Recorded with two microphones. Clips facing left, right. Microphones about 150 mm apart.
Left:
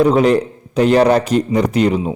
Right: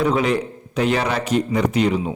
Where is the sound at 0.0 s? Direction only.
40° left (ahead or behind).